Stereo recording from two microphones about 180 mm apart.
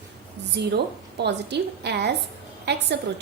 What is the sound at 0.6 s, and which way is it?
A woman's voice, 75° right (ahead or behind).